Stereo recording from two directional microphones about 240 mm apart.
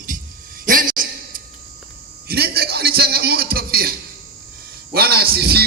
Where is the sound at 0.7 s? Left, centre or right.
Right.